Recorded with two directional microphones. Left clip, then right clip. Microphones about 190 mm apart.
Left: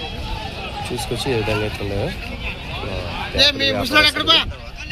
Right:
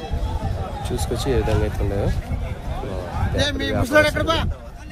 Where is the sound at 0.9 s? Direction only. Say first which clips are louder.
Left 1 dB; centre (ahead or behind).